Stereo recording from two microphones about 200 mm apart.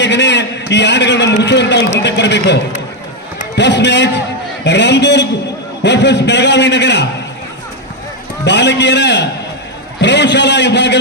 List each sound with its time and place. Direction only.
0.0 s a sound: 60° left (ahead or behind)
0.7 s a man's voice: 60° left (ahead or behind)
8.4 s a man's voice: 60° left (ahead or behind)